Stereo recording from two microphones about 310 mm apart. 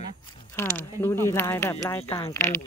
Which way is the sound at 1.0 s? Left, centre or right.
Centre.